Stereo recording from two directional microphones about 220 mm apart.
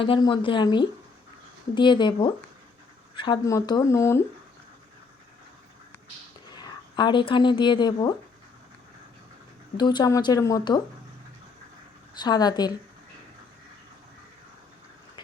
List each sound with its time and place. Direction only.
0.0 s a woman's voice: 20° left (ahead or behind)
6.5 s a woman's voice: 20° left (ahead or behind)
9.7 s a woman's voice: 20° left (ahead or behind)
12.1 s a woman's voice: 20° left (ahead or behind)